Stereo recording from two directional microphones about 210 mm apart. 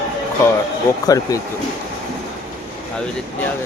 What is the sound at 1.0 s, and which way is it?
Speech, 15° left (ahead or behind).